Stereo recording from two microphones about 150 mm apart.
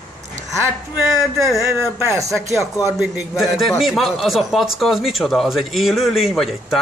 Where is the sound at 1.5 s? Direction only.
20° right (ahead or behind).